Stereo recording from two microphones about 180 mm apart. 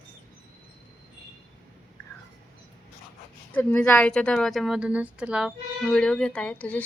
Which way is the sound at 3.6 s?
10° left (ahead or behind).